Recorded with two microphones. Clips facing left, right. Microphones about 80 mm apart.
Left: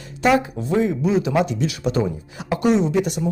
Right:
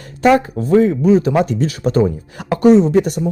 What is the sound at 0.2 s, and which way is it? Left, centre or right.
Speech, right.